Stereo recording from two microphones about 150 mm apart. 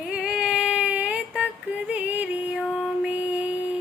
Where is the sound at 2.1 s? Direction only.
10° right (ahead or behind).